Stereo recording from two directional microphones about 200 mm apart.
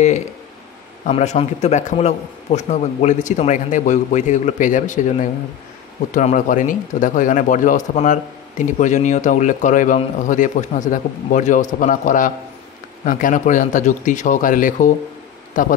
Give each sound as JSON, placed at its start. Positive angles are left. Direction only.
{"t": 1.0, "sound": "speech", "side_deg": 35}